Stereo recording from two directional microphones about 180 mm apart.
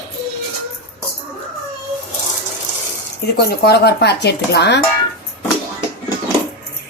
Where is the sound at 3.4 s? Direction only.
65° left (ahead or behind).